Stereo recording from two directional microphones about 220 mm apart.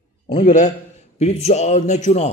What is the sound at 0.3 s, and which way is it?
A man's voice, 35° left (ahead or behind).